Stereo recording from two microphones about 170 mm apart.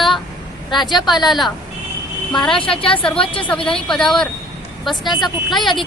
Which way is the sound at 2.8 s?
30° left (ahead or behind).